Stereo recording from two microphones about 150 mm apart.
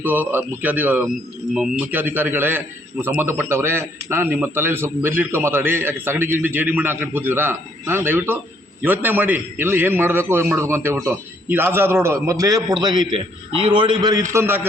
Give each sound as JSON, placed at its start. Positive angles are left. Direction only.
{"t": 0.0, "sound": "a man's voice", "side_deg": -10}